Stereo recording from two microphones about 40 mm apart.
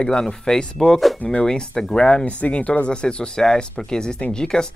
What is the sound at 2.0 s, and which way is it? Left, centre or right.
Speech, left.